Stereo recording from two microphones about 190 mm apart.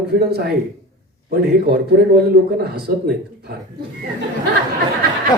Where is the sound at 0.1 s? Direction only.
60° right (ahead or behind).